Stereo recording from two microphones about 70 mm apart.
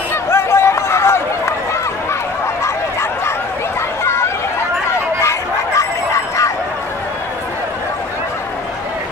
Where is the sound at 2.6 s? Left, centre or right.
Left.